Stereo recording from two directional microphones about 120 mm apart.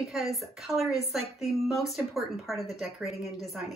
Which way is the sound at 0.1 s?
Centre (ahead or behind).